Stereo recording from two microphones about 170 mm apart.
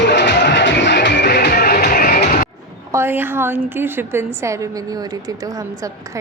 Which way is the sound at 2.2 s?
60° left (ahead or behind).